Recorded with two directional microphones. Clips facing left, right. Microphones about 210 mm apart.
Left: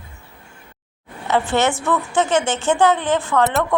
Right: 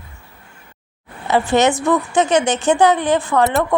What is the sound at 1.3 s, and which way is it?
Speech, 15° right (ahead or behind).